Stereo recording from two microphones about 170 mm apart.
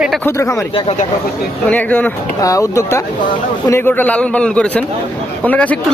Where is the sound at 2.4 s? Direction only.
20° left (ahead or behind).